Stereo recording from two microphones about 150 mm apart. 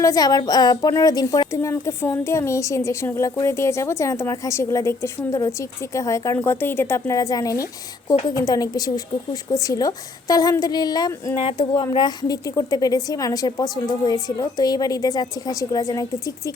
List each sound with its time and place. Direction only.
0.0 s speech: 25° left (ahead or behind)